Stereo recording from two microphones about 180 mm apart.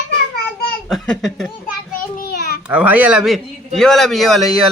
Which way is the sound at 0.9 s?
Centre (ahead or behind).